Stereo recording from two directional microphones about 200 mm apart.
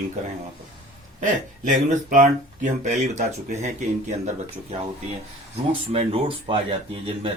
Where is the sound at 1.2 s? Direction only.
40° right (ahead or behind).